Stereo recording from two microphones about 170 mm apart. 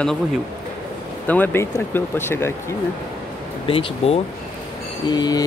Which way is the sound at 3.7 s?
30° left (ahead or behind).